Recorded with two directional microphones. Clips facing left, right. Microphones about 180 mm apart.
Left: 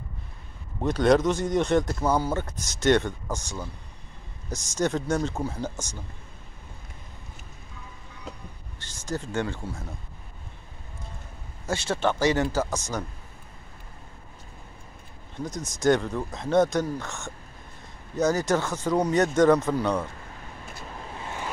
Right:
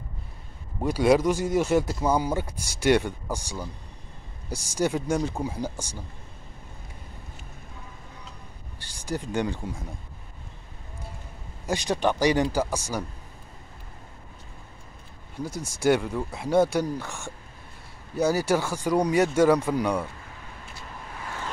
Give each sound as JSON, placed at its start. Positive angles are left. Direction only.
{"t": 0.7, "sound": "speech", "side_deg": -10}
{"t": 8.7, "sound": "speech", "side_deg": -10}
{"t": 11.6, "sound": "speech", "side_deg": -15}
{"t": 15.3, "sound": "speech", "side_deg": -10}
{"t": 21.2, "sound": "vehicle", "side_deg": 20}